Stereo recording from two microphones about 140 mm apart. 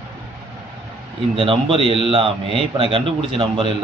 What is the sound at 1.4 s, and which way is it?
A man's voice, 40° right (ahead or behind).